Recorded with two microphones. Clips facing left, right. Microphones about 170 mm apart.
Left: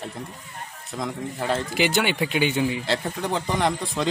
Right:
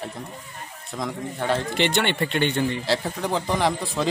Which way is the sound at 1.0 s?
Centre (ahead or behind).